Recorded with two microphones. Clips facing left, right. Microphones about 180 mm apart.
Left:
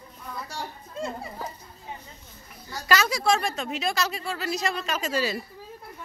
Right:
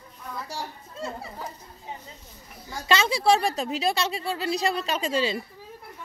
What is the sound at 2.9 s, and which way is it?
A woman's voice, 30° right (ahead or behind).